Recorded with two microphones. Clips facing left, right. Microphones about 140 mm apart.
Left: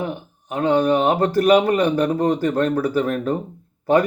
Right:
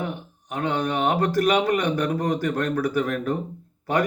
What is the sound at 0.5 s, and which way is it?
Speech, 30° left (ahead or behind).